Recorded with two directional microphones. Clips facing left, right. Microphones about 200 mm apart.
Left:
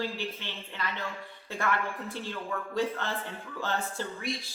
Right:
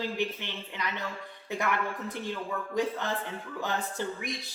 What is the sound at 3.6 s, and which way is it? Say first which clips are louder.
Speech: even; 15° right (ahead or behind).